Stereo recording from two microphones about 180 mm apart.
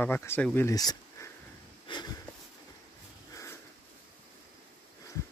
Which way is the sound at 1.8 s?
25° left (ahead or behind).